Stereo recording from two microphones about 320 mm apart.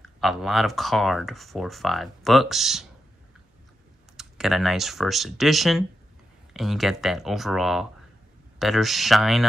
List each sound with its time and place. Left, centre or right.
0.0 s speech: centre
4.2 s speech: centre